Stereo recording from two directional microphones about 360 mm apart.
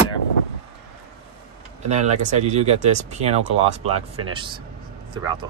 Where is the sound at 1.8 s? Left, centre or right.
Centre.